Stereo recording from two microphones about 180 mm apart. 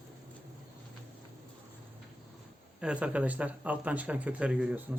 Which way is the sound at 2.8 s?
5° right (ahead or behind).